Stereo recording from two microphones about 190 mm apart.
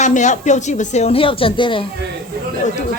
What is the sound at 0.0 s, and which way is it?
A woman's voice, 40° left (ahead or behind).